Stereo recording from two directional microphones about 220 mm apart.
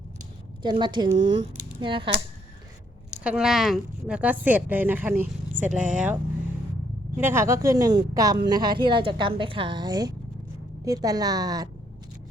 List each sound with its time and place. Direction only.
0.6 s a woman's voice: 20° right (ahead or behind)
3.2 s speech: 5° right (ahead or behind)
7.2 s a woman's voice: 10° right (ahead or behind)